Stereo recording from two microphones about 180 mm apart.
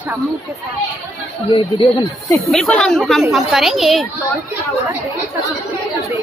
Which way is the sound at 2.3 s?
5° left (ahead or behind).